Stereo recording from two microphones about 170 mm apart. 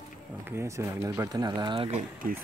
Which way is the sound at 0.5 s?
15° right (ahead or behind).